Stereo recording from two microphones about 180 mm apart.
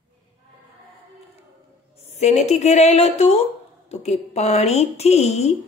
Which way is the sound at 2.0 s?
35° left (ahead or behind).